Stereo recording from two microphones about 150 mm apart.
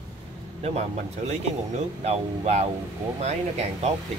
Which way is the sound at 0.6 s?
45° right (ahead or behind).